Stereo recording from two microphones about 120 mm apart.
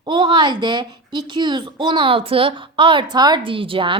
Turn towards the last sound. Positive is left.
turn(degrees=-45)  # may be behind; listen again after turning